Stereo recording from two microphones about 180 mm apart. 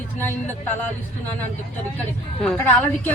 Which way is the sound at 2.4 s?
10° left (ahead or behind).